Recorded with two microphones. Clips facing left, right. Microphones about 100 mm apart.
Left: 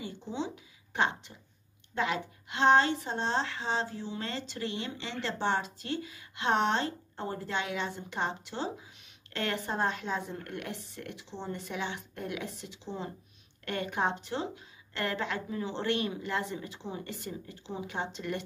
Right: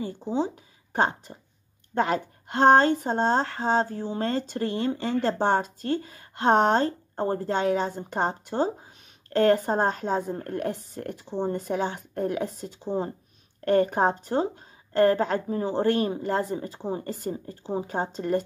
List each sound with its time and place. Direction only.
0.0 s a woman's voice: 40° right (ahead or behind)